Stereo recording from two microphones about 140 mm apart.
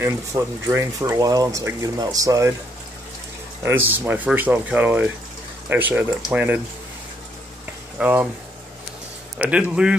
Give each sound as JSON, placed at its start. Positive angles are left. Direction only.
{"t": 0.0, "sound": "speech", "side_deg": -20}
{"t": 3.6, "sound": "speech", "side_deg": -15}
{"t": 8.0, "sound": "speech", "side_deg": -10}
{"t": 9.4, "sound": "speech", "side_deg": -10}